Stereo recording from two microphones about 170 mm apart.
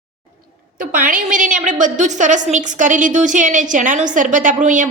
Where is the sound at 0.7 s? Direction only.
50° right (ahead or behind).